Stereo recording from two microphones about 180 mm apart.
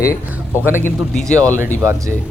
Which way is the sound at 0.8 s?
5° left (ahead or behind).